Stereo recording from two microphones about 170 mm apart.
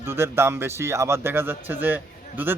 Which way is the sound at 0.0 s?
15° right (ahead or behind).